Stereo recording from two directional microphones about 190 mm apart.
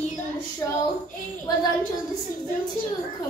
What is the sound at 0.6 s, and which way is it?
Child singing, 15° left (ahead or behind).